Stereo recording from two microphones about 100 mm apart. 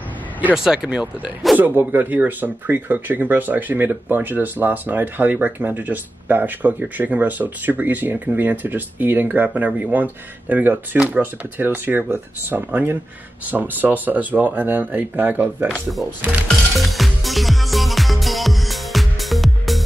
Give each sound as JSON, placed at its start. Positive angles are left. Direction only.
{"t": 0.7, "sound": "speech", "side_deg": -10}
{"t": 1.6, "sound": "speech", "side_deg": -20}
{"t": 16.4, "sound": "music", "side_deg": 0}